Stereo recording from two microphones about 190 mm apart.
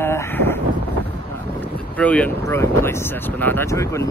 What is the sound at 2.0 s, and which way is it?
Speech, 5° left (ahead or behind).